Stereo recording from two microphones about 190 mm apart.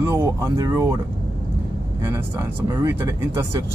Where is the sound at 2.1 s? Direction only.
15° right (ahead or behind).